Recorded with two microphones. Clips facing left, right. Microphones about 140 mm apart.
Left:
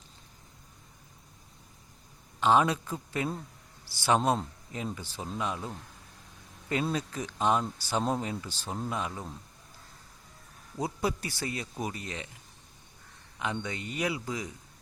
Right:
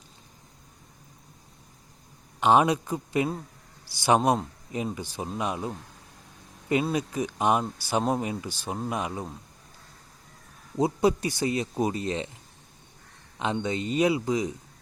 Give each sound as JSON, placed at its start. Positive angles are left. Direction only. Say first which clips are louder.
{"t": 2.4, "sound": "speech", "louder": "right 4 dB", "side_deg": -15}
{"t": 6.9, "sound": "speech", "louder": "right 5 dB", "side_deg": -15}
{"t": 10.8, "sound": "speech", "louder": "right 8 dB", "side_deg": -20}
{"t": 13.4, "sound": "speech", "louder": "right 6 dB", "side_deg": -25}